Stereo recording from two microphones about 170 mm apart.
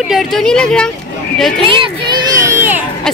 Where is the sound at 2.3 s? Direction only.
15° right (ahead or behind).